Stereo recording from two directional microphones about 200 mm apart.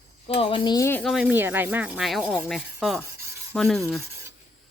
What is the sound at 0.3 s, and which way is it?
Speech, 25° left (ahead or behind).